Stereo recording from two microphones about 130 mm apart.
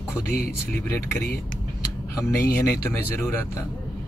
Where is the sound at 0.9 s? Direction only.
20° left (ahead or behind).